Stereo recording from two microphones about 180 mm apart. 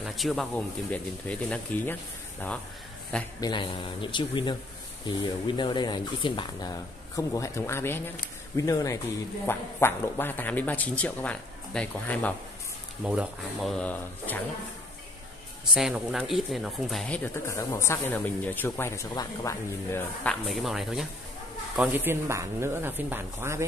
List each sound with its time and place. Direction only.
0.0 s speech: centre (ahead or behind)
3.3 s speech: 25° left (ahead or behind); by 12.4 s 10° left (ahead or behind)
13.0 s speech: 5° right (ahead or behind); by 14.4 s 10° left (ahead or behind)
15.7 s speech: centre (ahead or behind); by 20.3 s 15° left (ahead or behind)
20.4 s speech: centre (ahead or behind)